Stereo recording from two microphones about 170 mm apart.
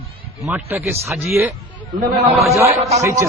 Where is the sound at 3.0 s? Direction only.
20° right (ahead or behind).